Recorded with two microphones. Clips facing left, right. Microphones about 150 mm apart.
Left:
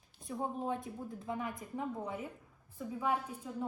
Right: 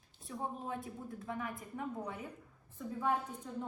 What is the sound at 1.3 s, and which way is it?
A woman's voice, 20° left (ahead or behind).